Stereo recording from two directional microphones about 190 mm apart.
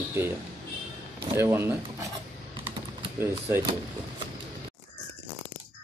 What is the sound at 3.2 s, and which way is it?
Speech, 15° right (ahead or behind).